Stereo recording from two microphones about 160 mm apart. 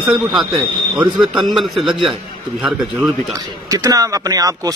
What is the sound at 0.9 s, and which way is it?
Speech, 25° right (ahead or behind).